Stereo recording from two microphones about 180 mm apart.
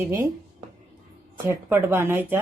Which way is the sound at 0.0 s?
15° right (ahead or behind).